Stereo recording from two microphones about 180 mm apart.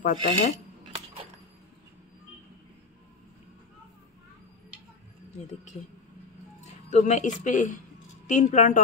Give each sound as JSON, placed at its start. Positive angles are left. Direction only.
{"t": 0.0, "sound": "speech", "side_deg": 45}
{"t": 6.9, "sound": "speech", "side_deg": 40}